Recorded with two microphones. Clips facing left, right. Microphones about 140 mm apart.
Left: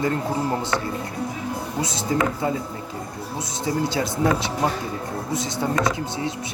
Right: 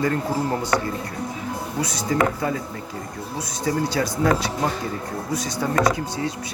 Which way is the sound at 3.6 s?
20° left (ahead or behind).